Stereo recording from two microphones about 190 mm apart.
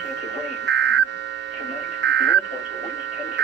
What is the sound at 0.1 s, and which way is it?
Buzzer, 65° right (ahead or behind).